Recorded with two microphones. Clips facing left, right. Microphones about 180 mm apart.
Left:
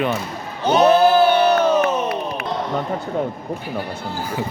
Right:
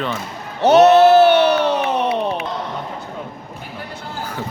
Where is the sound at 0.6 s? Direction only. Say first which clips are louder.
Right 4 dB; 70° right (ahead or behind).